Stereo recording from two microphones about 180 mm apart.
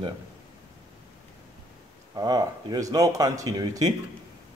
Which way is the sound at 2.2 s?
20° right (ahead or behind).